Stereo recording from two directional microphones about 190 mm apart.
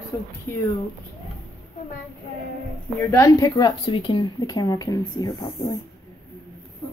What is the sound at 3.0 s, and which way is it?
Speech, 10° left (ahead or behind).